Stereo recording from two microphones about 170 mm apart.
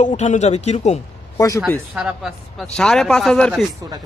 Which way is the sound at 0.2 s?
45° left (ahead or behind).